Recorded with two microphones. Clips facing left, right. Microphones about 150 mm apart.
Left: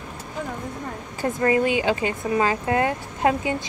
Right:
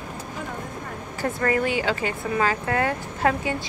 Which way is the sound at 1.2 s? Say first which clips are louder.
Left 3 dB; 20° left (ahead or behind).